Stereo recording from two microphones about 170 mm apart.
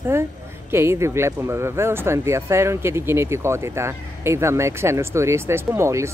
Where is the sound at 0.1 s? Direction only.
15° right (ahead or behind).